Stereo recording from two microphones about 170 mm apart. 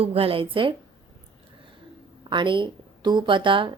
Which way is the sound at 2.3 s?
30° right (ahead or behind).